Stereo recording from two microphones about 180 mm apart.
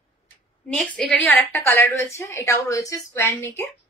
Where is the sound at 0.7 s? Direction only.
5° left (ahead or behind).